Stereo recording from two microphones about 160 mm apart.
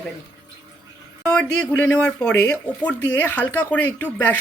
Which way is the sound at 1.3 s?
10° left (ahead or behind).